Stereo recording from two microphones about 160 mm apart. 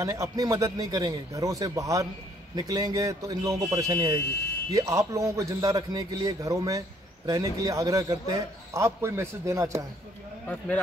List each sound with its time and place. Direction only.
0.0 s a man's voice: 20° right (ahead or behind)
10.4 s speech: 10° left (ahead or behind)